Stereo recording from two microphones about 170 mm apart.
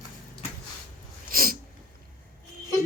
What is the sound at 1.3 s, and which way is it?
Sneeze, 60° right (ahead or behind).